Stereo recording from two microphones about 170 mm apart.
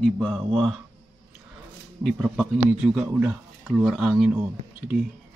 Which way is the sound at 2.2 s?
Centre (ahead or behind).